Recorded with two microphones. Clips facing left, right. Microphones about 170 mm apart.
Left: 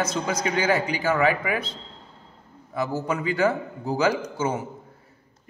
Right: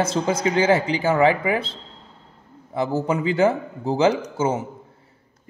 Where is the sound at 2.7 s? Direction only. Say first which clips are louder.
Right 4 dB; 25° right (ahead or behind).